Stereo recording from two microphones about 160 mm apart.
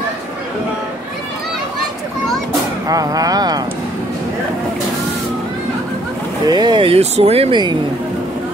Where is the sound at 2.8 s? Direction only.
20° right (ahead or behind).